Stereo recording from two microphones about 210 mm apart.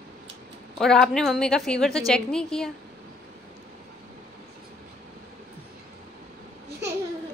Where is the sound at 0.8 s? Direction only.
Centre (ahead or behind).